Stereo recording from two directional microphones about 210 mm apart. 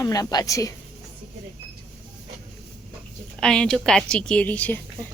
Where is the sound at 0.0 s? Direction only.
15° left (ahead or behind).